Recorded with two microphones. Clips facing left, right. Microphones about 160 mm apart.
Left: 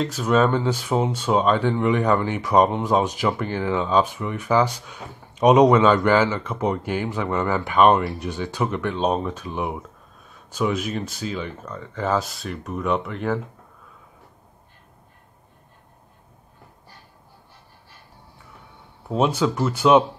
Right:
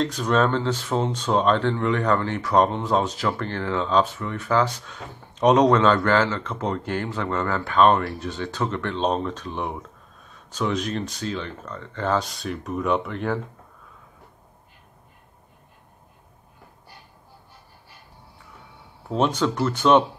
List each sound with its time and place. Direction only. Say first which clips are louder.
0.0 s speech: left 2 dB; 5° left (ahead or behind)
19.0 s speech: left 1 dB; 10° left (ahead or behind)